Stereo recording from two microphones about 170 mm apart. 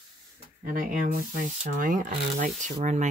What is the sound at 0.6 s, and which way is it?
Speech, 55° right (ahead or behind).